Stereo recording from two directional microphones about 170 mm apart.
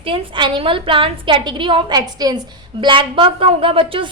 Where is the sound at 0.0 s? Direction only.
30° right (ahead or behind).